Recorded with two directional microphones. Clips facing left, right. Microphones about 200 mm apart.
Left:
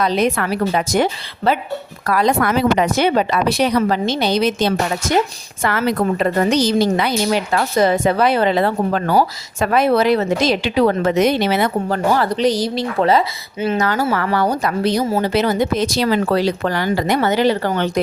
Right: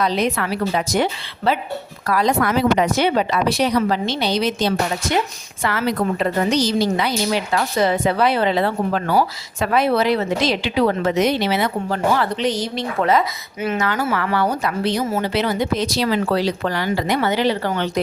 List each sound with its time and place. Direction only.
0.0 s speech: 50° left (ahead or behind)